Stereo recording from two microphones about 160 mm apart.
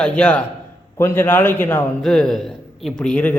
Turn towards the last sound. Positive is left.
turn(degrees=10)  # may be behind; listen again after turning